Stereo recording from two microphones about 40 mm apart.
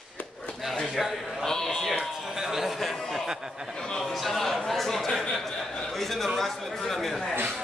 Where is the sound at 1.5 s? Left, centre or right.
Centre.